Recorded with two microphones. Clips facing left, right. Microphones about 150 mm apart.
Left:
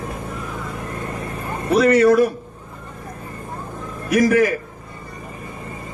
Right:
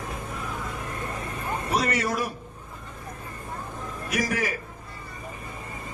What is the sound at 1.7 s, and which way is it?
Speech, 55° left (ahead or behind).